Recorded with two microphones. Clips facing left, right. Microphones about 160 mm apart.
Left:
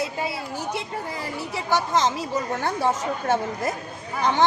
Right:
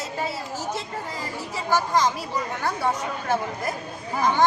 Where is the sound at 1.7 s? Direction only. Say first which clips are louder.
Even; 25° left (ahead or behind).